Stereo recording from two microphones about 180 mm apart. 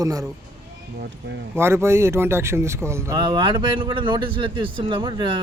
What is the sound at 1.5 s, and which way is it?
Speech, 15° right (ahead or behind).